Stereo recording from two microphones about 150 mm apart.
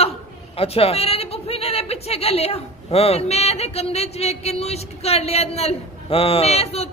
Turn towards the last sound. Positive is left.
turn(degrees=45)  # may be behind; listen again after turning